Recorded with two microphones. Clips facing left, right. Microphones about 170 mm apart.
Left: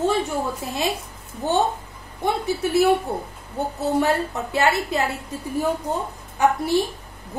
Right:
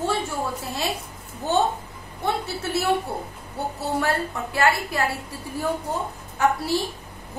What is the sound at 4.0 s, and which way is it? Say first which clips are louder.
A woman's voice: left 3 dB; 20° left (ahead or behind).